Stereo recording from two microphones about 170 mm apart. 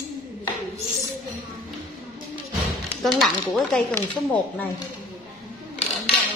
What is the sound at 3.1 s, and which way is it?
Speech, centre (ahead or behind).